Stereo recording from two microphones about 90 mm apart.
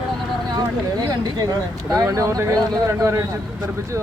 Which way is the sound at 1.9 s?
40° right (ahead or behind).